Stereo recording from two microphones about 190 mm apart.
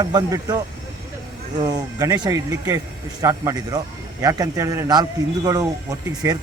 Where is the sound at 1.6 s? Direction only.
20° right (ahead or behind).